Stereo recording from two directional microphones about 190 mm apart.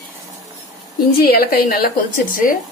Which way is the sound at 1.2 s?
50° left (ahead or behind).